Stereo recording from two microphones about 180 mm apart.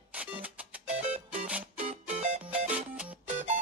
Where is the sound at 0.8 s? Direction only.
40° right (ahead or behind).